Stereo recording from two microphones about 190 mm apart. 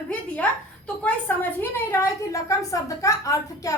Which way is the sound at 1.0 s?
10° left (ahead or behind).